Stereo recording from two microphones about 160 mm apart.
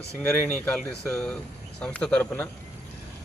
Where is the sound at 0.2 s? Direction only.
10° left (ahead or behind).